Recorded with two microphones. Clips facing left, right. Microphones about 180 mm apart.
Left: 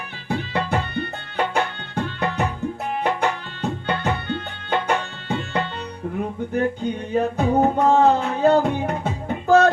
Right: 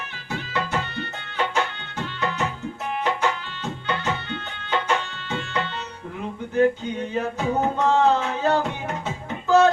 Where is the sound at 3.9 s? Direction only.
55° left (ahead or behind).